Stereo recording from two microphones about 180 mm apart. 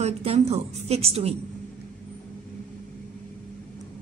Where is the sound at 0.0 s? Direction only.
35° right (ahead or behind).